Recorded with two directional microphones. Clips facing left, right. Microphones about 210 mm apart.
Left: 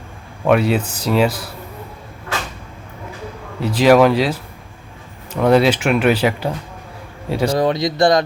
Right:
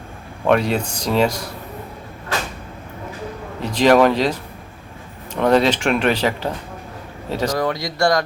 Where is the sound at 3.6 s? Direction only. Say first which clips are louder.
Left 2 dB; 5° left (ahead or behind).